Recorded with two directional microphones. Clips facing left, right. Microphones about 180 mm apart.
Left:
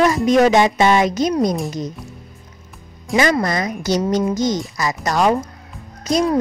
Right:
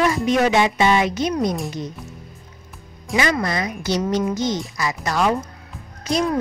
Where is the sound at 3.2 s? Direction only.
40° left (ahead or behind).